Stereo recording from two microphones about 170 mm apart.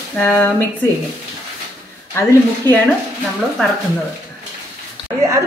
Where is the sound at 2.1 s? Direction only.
10° left (ahead or behind).